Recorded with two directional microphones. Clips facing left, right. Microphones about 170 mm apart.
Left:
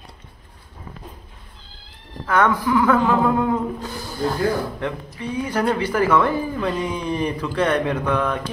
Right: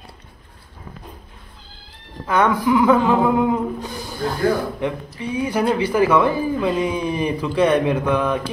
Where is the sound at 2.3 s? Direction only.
15° right (ahead or behind).